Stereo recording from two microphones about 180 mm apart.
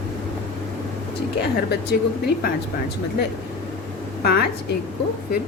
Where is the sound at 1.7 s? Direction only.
60° left (ahead or behind).